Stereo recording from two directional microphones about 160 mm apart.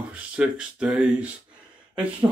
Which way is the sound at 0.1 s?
5° right (ahead or behind).